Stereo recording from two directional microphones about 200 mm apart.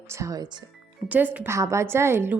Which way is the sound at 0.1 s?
15° right (ahead or behind).